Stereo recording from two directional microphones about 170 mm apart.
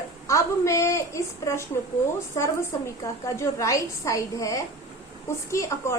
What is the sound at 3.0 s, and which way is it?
Speech, 20° left (ahead or behind).